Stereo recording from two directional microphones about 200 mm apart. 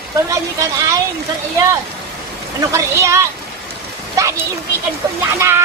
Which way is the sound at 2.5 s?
15° right (ahead or behind).